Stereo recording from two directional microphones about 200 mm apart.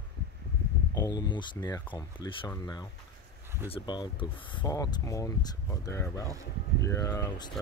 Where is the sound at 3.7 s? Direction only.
20° left (ahead or behind).